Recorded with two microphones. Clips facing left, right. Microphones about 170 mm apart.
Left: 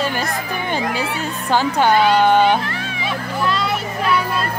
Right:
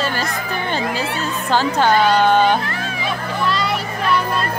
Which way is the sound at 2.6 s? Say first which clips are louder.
Right 1 dB; 40° right (ahead or behind).